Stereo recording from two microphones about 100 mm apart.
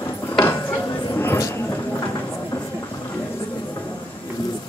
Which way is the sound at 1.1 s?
20° left (ahead or behind).